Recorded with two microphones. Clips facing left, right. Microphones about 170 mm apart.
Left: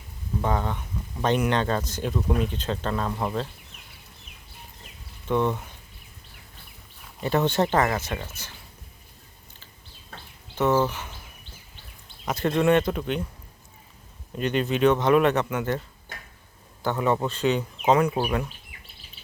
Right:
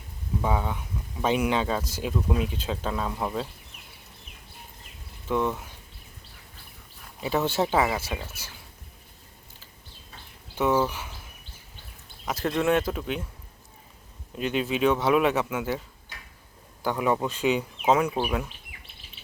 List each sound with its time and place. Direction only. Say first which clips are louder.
0.4 s speech: left 1 dB; 5° right (ahead or behind)
5.3 s speech: left 2 dB; centre (ahead or behind)
7.2 s speech: left 2 dB; 5° right (ahead or behind)
10.6 s speech: left 2 dB; 5° right (ahead or behind)
12.2 s speech: left 3 dB; centre (ahead or behind)
14.3 s speech: left 2 dB; 5° right (ahead or behind)
16.1 s tick-tock: left 4 dB; 50° left (ahead or behind)
16.8 s speech: left 1 dB; 10° right (ahead or behind)